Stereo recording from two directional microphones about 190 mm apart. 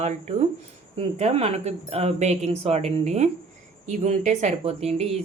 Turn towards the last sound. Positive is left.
turn(degrees=-35)  # may be behind; listen again after turning